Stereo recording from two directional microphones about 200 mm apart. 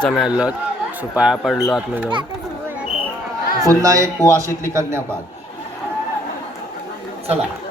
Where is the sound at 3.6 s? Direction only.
15° right (ahead or behind).